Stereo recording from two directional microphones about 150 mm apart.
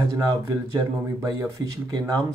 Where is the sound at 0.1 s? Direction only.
20° right (ahead or behind).